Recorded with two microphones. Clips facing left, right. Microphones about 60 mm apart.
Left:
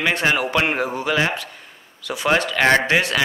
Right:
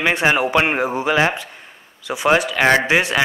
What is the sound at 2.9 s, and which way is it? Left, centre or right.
Speech, centre.